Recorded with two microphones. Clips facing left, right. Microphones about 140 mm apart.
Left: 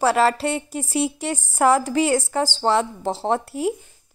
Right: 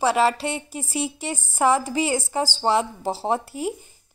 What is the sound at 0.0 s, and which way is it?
A woman's voice, 5° right (ahead or behind).